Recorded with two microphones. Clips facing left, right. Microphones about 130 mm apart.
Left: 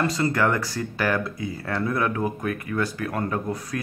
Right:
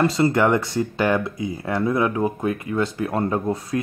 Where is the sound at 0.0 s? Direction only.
25° right (ahead or behind).